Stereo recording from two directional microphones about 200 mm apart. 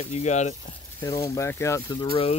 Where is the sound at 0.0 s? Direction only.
35° left (ahead or behind).